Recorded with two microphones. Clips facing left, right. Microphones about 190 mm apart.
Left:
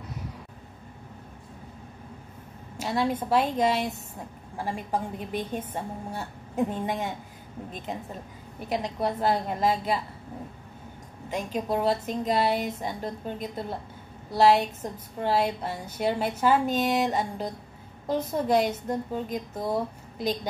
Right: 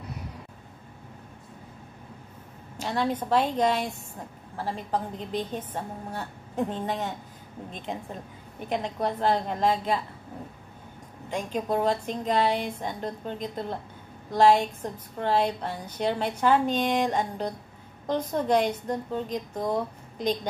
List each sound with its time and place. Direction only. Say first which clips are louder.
2.8 s a woman's voice: left 1 dB; 10° left (ahead or behind)
11.2 s a woman's voice: even; 5° left (ahead or behind)